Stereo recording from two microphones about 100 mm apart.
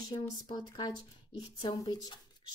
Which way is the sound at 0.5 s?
45° left (ahead or behind).